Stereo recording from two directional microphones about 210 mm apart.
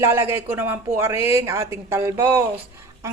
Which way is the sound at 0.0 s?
10° right (ahead or behind).